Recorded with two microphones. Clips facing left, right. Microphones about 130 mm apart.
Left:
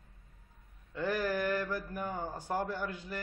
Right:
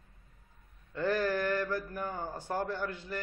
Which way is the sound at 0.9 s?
10° left (ahead or behind).